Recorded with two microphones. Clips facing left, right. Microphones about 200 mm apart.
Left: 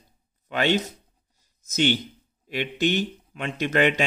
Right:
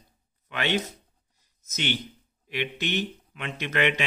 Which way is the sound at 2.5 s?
35° left (ahead or behind).